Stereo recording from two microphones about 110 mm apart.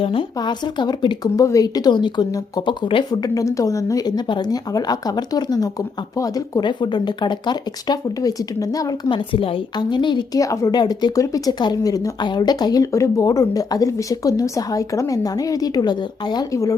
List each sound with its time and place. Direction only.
0.0 s a woman's voice: 55° left (ahead or behind)
0.3 s speech: 40° left (ahead or behind)
9.0 s speech: 50° left (ahead or behind)
10.4 s speech: 30° left (ahead or behind)